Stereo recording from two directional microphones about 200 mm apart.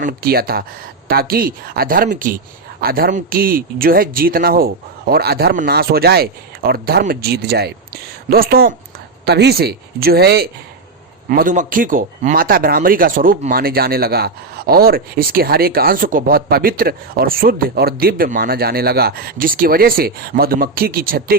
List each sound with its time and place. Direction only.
0.0 s speech: 50° right (ahead or behind)